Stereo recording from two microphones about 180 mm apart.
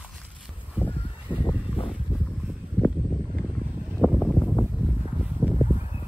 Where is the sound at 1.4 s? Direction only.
30° left (ahead or behind).